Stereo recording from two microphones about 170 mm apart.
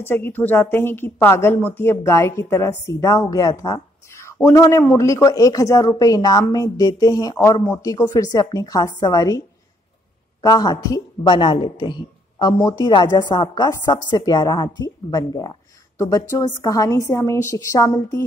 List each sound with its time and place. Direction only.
0.0 s a woman's voice: 15° left (ahead or behind)
10.4 s a woman's voice: 25° left (ahead or behind)